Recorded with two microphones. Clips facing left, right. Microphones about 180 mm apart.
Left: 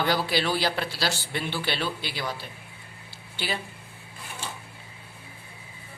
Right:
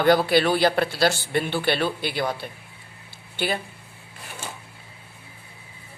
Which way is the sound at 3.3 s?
55° right (ahead or behind).